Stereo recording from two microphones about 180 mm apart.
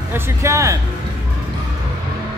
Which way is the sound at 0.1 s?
15° right (ahead or behind).